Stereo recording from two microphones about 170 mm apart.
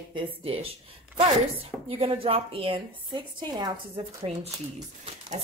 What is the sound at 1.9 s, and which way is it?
A woman's voice, 30° right (ahead or behind).